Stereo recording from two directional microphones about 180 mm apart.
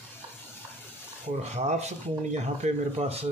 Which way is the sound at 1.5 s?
40° right (ahead or behind).